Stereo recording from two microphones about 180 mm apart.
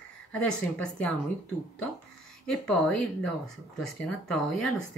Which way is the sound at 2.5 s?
5° left (ahead or behind).